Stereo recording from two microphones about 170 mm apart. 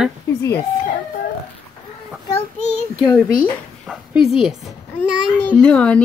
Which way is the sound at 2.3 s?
45° left (ahead or behind).